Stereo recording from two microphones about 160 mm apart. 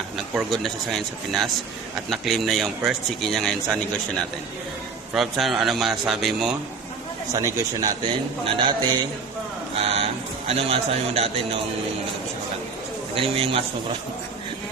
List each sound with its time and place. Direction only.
0.3 s speech: centre (ahead or behind)
5.1 s speech: centre (ahead or behind)
7.3 s speech: 20° right (ahead or behind)
8.4 s a man's voice: 35° right (ahead or behind)
9.7 s a sound: 40° right (ahead or behind)
10.5 s a man's voice: 40° right (ahead or behind)
13.1 s a man's voice: 35° right (ahead or behind)